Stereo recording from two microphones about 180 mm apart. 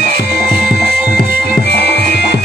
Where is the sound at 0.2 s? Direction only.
65° left (ahead or behind).